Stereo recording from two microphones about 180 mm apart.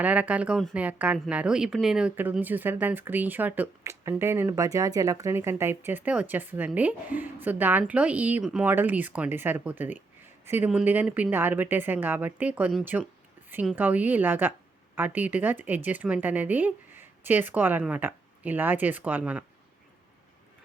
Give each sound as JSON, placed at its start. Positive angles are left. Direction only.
{"t": 0.0, "sound": "a woman's voice", "side_deg": -10}